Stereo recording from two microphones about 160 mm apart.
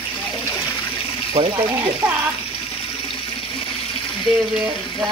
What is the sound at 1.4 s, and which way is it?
Speech, 40° right (ahead or behind).